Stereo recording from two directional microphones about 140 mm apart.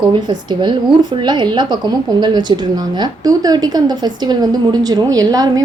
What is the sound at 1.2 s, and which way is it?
Speech, 30° right (ahead or behind).